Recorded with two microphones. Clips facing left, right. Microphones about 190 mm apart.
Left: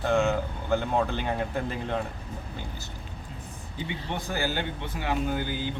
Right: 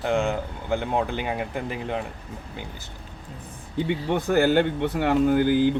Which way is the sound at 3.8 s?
60° right (ahead or behind).